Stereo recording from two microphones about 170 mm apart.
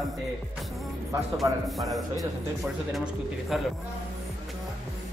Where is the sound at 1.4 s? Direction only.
Centre (ahead or behind).